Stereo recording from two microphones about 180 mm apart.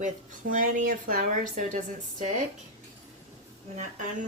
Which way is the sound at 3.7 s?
45° right (ahead or behind).